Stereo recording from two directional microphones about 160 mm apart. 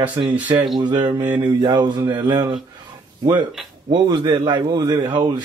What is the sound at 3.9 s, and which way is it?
Speech, 25° right (ahead or behind).